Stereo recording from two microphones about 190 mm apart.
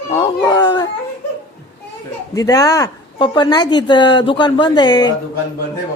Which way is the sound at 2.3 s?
20° left (ahead or behind).